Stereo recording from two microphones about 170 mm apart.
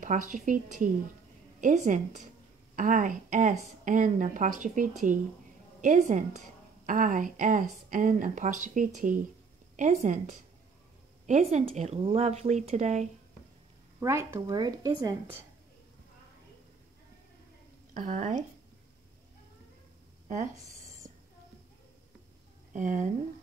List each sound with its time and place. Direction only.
0.0 s speech: 50° right (ahead or behind)
13.9 s speech: 15° right (ahead or behind)
17.9 s speech: 45° right (ahead or behind)
22.8 s speech: 45° right (ahead or behind)